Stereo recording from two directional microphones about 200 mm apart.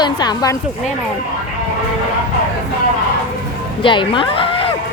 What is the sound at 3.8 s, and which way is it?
Speech, 25° left (ahead or behind).